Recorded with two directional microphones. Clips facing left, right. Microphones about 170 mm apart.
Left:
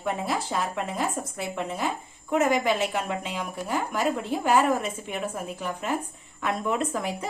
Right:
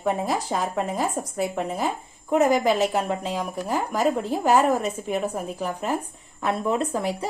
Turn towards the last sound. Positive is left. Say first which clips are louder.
# right 3 dB
turn(degrees=-35)  # may be behind; listen again after turning